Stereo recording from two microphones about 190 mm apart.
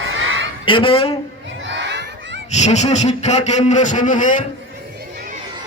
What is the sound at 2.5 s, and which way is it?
A man's voice, 35° left (ahead or behind).